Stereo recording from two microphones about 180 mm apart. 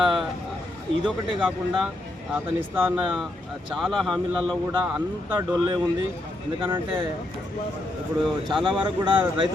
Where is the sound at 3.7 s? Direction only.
Centre (ahead or behind).